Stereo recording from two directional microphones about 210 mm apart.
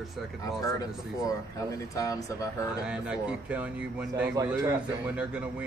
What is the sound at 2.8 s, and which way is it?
Speech, 5° right (ahead or behind).